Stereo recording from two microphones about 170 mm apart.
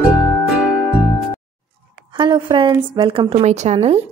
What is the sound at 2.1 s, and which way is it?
A woman's voice, 25° right (ahead or behind).